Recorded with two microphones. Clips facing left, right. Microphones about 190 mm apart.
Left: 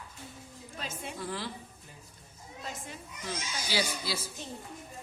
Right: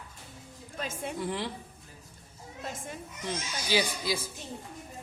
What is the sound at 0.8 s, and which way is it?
Speech, 50° right (ahead or behind).